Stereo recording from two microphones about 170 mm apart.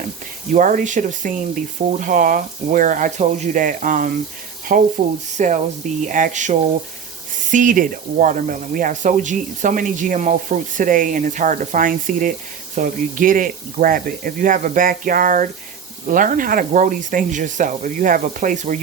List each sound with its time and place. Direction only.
0.5 s speech: 50° right (ahead or behind)